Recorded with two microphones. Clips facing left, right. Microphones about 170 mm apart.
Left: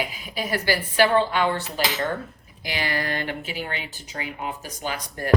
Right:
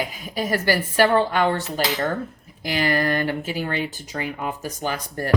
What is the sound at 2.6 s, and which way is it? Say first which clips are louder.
A woman's voice: right 6 dB; 45° right (ahead or behind).